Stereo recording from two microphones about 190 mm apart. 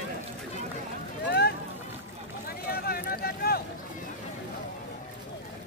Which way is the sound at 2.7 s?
55° left (ahead or behind).